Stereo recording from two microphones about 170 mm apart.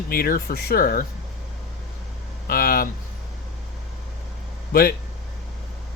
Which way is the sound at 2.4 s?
60° left (ahead or behind).